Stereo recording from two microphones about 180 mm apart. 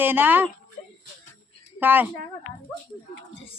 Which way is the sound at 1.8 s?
10° right (ahead or behind).